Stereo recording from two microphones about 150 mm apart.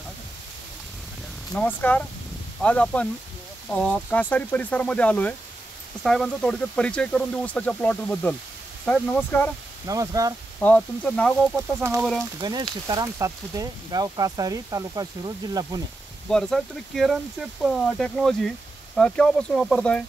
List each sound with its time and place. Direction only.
1.5 s speech: 10° left (ahead or behind)
9.8 s speech: 25° right (ahead or behind)
10.6 s speech: 10° left (ahead or behind)
11.8 s speech: 15° right (ahead or behind)
12.4 s speech: 30° right (ahead or behind)
16.3 s speech: 5° left (ahead or behind)